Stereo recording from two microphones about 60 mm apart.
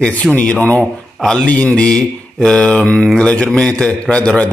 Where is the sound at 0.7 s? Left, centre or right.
Centre.